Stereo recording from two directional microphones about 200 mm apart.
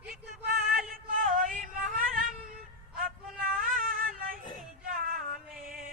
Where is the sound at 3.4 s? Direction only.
45° right (ahead or behind).